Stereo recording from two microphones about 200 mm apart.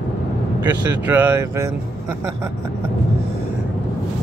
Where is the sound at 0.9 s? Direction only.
10° right (ahead or behind).